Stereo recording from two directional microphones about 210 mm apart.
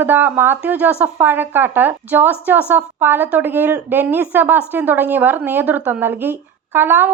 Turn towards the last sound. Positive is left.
turn(degrees=-10)  # may be behind; listen again after turning